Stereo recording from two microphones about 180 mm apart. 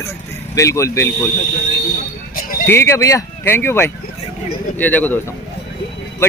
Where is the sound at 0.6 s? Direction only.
15° left (ahead or behind).